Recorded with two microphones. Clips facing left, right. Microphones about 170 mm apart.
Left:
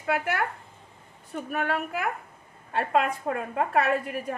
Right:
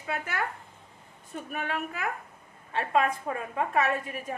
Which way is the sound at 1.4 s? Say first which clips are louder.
Left 5 dB; 60° left (ahead or behind).